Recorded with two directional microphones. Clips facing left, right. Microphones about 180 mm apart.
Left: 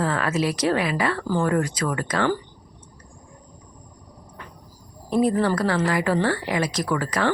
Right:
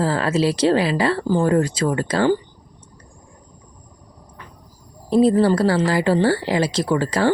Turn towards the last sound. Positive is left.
turn(degrees=-30)  # may be behind; listen again after turning